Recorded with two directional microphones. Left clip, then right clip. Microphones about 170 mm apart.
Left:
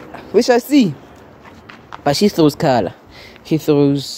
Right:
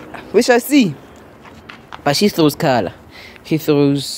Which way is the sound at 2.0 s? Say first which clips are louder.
Left 1 dB; 25° left (ahead or behind).